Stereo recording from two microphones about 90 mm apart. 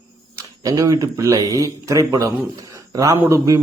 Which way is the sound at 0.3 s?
40° right (ahead or behind).